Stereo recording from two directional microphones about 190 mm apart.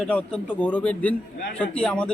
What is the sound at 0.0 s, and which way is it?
A man's voice, 5° left (ahead or behind).